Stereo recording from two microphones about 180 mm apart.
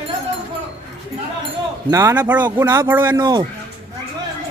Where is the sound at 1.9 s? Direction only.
15° right (ahead or behind).